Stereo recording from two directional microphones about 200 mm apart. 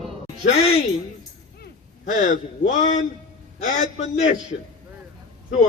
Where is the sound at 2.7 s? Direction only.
35° left (ahead or behind).